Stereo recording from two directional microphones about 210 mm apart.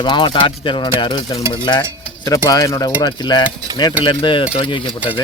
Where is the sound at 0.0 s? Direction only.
20° left (ahead or behind).